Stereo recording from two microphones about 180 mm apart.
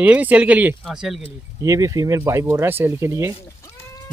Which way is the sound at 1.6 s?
20° right (ahead or behind).